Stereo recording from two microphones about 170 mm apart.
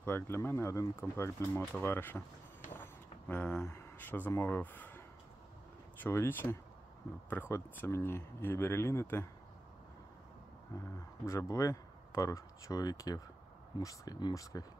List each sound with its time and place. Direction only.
0.0 s speech: 15° left (ahead or behind)
2.7 s a sound: 10° left (ahead or behind)
5.9 s speech: 10° left (ahead or behind)
10.7 s speech: 20° left (ahead or behind)